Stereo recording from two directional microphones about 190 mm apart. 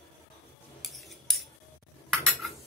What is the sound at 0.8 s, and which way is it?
Cutlery, centre (ahead or behind).